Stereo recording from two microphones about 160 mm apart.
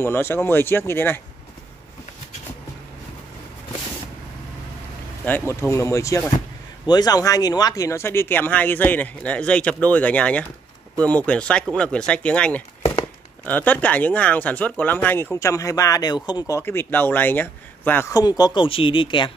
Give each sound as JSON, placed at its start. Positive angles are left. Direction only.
{"t": 0.0, "sound": "speech", "side_deg": 15}
{"t": 5.5, "sound": "speech", "side_deg": 15}